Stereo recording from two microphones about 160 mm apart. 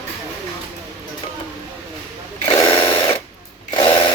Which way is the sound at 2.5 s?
25° left (ahead or behind).